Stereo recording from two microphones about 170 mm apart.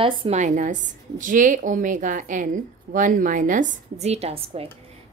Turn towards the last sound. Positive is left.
turn(degrees=-35)  # may be behind; listen again after turning